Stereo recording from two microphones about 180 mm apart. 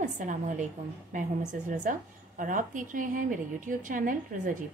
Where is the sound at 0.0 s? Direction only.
45° right (ahead or behind).